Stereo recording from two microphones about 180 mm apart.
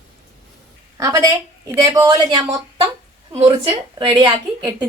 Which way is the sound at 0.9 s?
20° right (ahead or behind).